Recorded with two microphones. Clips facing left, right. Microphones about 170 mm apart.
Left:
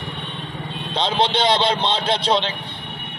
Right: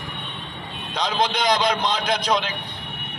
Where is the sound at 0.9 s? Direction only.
30° left (ahead or behind).